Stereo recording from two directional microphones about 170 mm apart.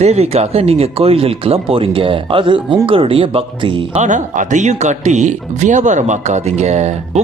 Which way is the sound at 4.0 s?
45° right (ahead or behind).